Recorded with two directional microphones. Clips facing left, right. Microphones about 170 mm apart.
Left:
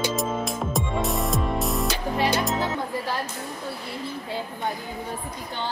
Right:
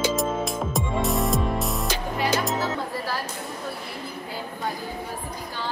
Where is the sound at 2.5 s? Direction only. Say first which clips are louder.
Left 1 dB; 20° left (ahead or behind).